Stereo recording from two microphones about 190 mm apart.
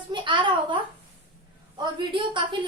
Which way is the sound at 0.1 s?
25° right (ahead or behind).